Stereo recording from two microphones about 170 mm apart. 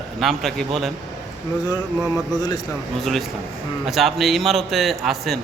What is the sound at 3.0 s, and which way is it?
A man's voice, centre (ahead or behind).